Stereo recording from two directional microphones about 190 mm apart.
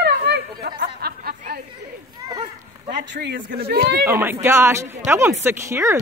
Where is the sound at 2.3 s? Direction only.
25° right (ahead or behind).